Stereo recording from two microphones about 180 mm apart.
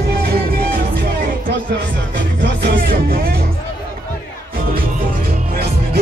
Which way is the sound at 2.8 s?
55° right (ahead or behind).